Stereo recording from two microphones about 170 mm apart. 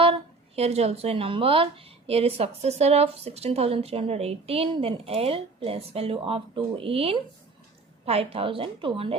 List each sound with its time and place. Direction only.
0.0 s a woman's voice: 35° right (ahead or behind)